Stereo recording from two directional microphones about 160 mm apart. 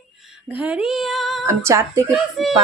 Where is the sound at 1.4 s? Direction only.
20° right (ahead or behind).